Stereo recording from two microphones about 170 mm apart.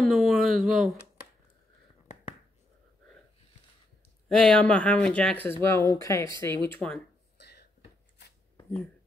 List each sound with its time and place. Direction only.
0.0 s speech: centre (ahead or behind)
4.3 s speech: 5° left (ahead or behind)
7.3 s whispering: 75° left (ahead or behind)